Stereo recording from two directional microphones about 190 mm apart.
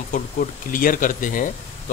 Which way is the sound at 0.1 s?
45° left (ahead or behind).